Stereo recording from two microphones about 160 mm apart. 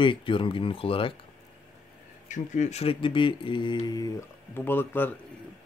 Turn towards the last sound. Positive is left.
turn(degrees=15)  # may be behind; listen again after turning